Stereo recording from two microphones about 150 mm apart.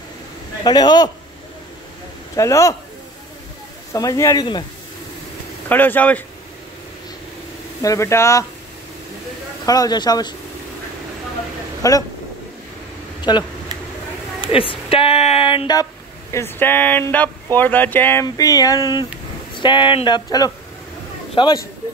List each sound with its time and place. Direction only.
0.7 s speech: 25° left (ahead or behind)
2.3 s speech: 20° left (ahead or behind)
3.9 s speech: 20° left (ahead or behind)
5.7 s speech: 10° left (ahead or behind)
7.8 s speech: 20° left (ahead or behind)
9.7 s speech: 25° left (ahead or behind)
11.8 s speech: 25° left (ahead or behind)
13.2 s speech: 30° left (ahead or behind)
14.5 s speech: 40° left (ahead or behind); by 18.2 s 10° left (ahead or behind)
18.2 s speech: 25° left (ahead or behind)